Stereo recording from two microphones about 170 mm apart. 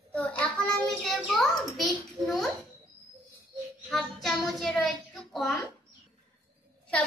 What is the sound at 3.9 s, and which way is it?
Child singing, centre (ahead or behind).